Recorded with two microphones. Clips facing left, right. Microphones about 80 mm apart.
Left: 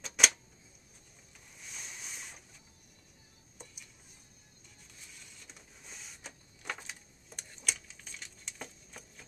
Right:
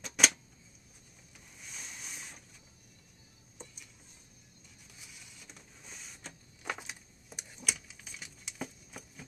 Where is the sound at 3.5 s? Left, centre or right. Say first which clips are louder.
Right 2 dB; centre.